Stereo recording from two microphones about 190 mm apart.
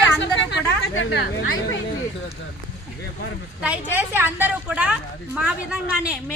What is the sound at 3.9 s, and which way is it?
A woman's voice, 10° right (ahead or behind).